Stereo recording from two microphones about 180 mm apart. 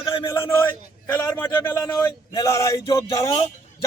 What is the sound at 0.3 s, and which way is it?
A man's voice, 15° left (ahead or behind).